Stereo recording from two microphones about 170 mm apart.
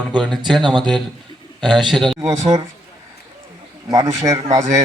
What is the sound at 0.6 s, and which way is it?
A man's voice, 25° right (ahead or behind).